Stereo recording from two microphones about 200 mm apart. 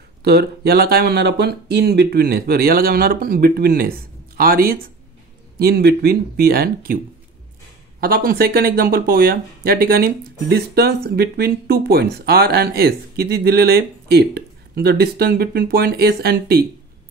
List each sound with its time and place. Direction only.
0.2 s speech: 55° right (ahead or behind)
8.0 s speech: 50° right (ahead or behind)